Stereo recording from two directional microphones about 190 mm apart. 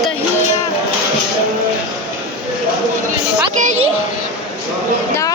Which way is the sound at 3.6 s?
40° right (ahead or behind).